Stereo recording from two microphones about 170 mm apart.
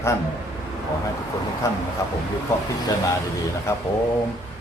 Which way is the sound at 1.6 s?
15° left (ahead or behind).